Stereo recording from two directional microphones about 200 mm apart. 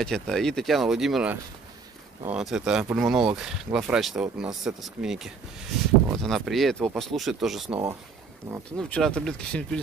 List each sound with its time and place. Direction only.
0.0 s speech: centre (ahead or behind)
7.7 s speech: 20° right (ahead or behind)
8.7 s speech: 5° left (ahead or behind)